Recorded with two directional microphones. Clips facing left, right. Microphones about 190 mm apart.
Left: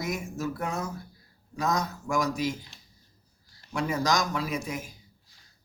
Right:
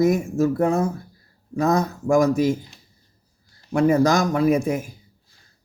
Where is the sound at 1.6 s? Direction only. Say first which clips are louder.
Right 8 dB; 55° right (ahead or behind).